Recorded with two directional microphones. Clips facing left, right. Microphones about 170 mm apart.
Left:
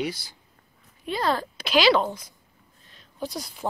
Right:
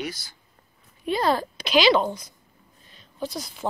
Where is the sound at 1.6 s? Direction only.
5° left (ahead or behind).